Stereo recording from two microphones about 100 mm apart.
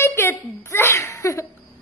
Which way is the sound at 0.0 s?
25° left (ahead or behind).